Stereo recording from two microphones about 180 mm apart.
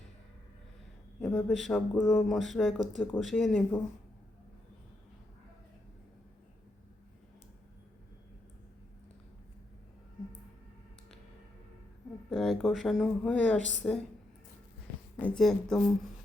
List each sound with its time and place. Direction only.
1.2 s a sound: 10° left (ahead or behind)
1.5 s speech: centre (ahead or behind)
12.3 s speech: centre (ahead or behind)
13.6 s a woman's voice: 45° right (ahead or behind)
15.2 s speech: 5° left (ahead or behind)